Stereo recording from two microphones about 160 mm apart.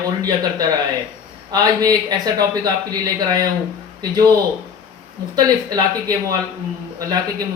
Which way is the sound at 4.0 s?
25° right (ahead or behind).